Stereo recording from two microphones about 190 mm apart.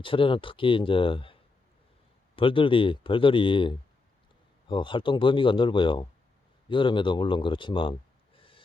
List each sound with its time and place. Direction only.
0.0 s speech: 25° left (ahead or behind)
8.4 s snort: 25° left (ahead or behind)